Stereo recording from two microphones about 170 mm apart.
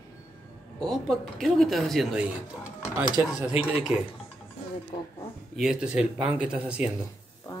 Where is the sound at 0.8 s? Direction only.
Centre (ahead or behind).